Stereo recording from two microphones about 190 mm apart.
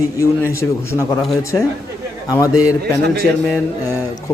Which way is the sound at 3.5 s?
15° left (ahead or behind).